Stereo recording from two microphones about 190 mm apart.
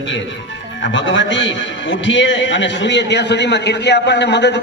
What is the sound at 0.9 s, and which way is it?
A man's voice, 75° left (ahead or behind).